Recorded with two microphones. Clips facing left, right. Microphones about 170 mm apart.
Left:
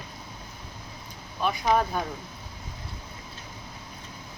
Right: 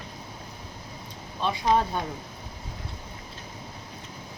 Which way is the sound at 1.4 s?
25° right (ahead or behind).